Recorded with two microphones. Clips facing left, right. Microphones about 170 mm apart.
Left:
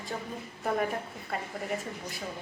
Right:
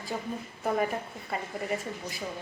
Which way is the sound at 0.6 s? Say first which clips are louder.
Right 1 dB; 5° right (ahead or behind).